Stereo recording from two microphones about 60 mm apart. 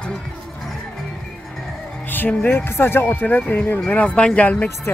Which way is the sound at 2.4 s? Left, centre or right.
Left.